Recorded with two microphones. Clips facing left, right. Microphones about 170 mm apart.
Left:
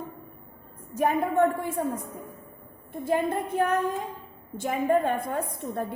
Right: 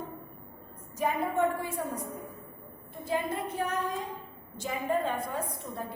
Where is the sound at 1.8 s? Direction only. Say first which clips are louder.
Left 9 dB; 50° left (ahead or behind).